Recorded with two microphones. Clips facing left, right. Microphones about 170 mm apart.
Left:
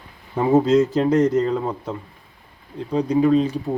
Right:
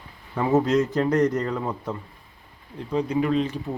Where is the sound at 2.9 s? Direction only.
35° left (ahead or behind).